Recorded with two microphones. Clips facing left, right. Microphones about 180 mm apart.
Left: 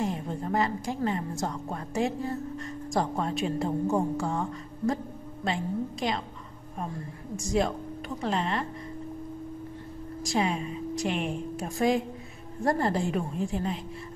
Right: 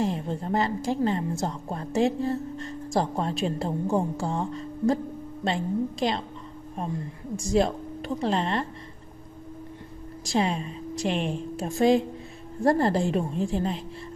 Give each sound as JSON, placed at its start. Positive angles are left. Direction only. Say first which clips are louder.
{"t": 0.0, "sound": "a woman's voice", "louder": "right 3 dB", "side_deg": -30}
{"t": 7.3, "sound": "a woman's voice", "louder": "right 3 dB", "side_deg": -30}
{"t": 10.2, "sound": "a woman's voice", "louder": "right 2 dB", "side_deg": -30}